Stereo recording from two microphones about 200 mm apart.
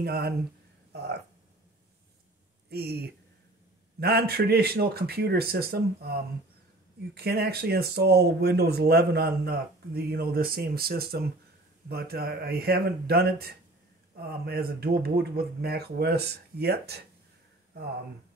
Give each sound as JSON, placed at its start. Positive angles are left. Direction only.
{"t": 0.0, "sound": "speech", "side_deg": -50}
{"t": 2.7, "sound": "speech", "side_deg": -50}